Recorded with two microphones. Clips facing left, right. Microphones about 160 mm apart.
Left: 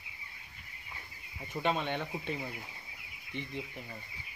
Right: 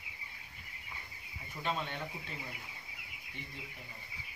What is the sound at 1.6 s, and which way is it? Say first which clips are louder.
Speech: left 5 dB; 75° left (ahead or behind).